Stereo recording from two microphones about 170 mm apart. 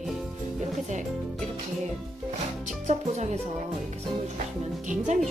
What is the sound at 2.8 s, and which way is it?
Music, 45° right (ahead or behind).